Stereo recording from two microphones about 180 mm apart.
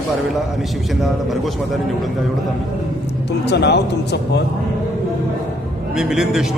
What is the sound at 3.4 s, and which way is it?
Speech, 70° left (ahead or behind).